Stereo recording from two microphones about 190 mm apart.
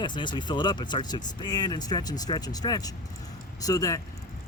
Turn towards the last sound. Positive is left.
turn(degrees=20)  # may be behind; listen again after turning